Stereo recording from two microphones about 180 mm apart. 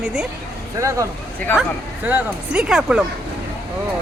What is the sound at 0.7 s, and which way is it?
Speech, 15° right (ahead or behind).